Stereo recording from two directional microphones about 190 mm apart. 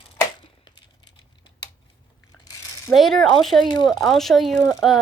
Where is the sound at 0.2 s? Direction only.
25° left (ahead or behind).